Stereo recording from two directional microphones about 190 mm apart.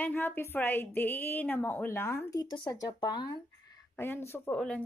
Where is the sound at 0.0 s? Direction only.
10° left (ahead or behind).